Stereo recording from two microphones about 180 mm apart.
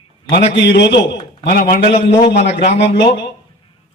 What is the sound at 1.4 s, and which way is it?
Speech, 55° left (ahead or behind).